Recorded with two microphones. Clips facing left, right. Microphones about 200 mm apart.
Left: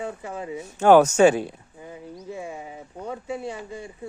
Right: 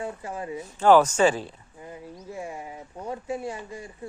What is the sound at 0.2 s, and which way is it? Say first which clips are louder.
Speech: left 1 dB; 20° left (ahead or behind).